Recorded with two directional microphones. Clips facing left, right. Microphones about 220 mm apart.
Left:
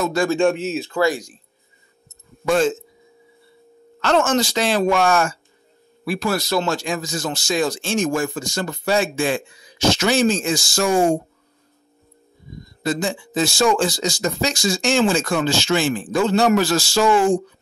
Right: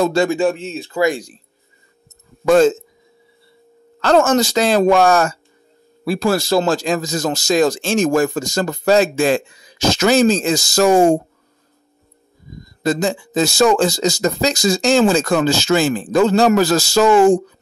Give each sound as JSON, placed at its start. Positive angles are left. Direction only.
{"t": 0.0, "sound": "speech", "side_deg": -30}
{"t": 0.3, "sound": "speech", "side_deg": -5}
{"t": 1.0, "sound": "speech", "side_deg": -30}
{"t": 2.4, "sound": "speech", "side_deg": -40}
{"t": 4.0, "sound": "speech", "side_deg": -35}
{"t": 7.8, "sound": "speech", "side_deg": -90}
{"t": 8.1, "sound": "speech", "side_deg": -40}
{"t": 12.8, "sound": "speech", "side_deg": -40}